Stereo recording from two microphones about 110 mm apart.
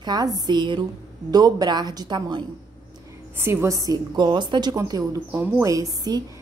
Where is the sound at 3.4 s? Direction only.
25° right (ahead or behind).